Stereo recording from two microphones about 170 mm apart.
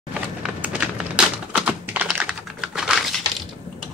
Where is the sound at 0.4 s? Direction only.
5° right (ahead or behind).